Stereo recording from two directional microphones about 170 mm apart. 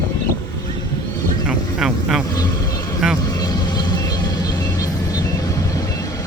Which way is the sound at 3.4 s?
25° left (ahead or behind).